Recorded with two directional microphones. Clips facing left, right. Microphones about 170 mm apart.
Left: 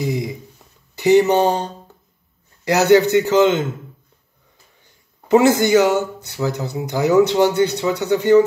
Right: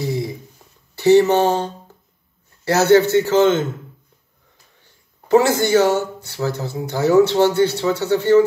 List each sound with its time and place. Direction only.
0.0 s a sound: 15° left (ahead or behind)
0.9 s speech: 15° left (ahead or behind)
5.3 s speech: 15° left (ahead or behind)